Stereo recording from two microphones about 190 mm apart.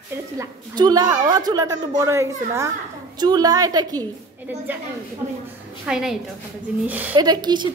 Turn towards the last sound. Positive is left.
turn(degrees=-25)  # may be behind; listen again after turning